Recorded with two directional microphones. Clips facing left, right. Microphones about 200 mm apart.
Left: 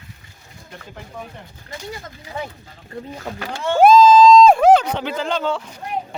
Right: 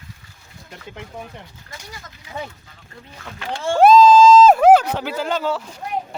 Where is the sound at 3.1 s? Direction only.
40° left (ahead or behind).